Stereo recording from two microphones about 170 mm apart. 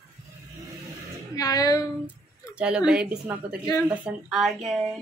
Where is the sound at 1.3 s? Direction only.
20° left (ahead or behind).